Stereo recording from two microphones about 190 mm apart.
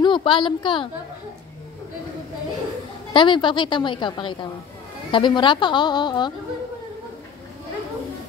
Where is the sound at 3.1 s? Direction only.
25° left (ahead or behind).